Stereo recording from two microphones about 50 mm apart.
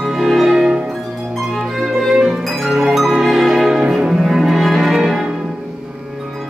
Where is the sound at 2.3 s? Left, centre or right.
Centre.